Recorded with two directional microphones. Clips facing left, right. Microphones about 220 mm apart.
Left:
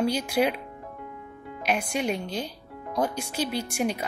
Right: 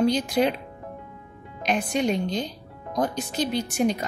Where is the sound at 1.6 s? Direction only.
10° left (ahead or behind).